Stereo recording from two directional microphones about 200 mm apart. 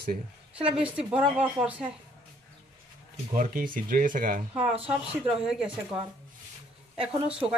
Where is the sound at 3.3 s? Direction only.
45° right (ahead or behind).